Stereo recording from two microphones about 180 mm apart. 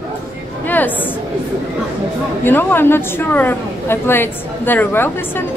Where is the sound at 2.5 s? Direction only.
10° left (ahead or behind).